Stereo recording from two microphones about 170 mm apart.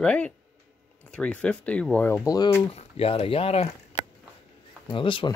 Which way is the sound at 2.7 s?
35° left (ahead or behind).